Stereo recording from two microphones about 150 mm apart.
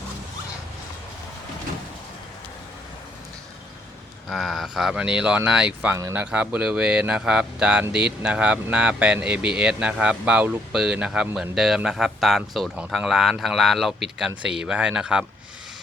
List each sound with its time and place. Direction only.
4.3 s speech: centre (ahead or behind)
6.0 s speech: 20° right (ahead or behind)
6.3 s speech: 10° right (ahead or behind)